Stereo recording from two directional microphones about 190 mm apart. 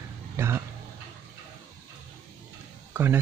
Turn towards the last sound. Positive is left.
turn(degrees=-10)  # may be behind; listen again after turning